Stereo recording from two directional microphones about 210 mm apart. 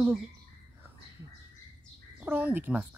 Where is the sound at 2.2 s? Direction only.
10° right (ahead or behind).